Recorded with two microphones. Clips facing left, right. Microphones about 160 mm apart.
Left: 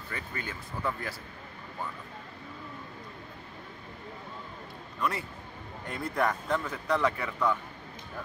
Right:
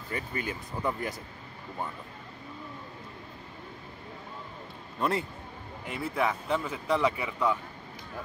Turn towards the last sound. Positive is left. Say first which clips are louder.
# right 1 dB
turn(degrees=-10)  # may be behind; listen again after turning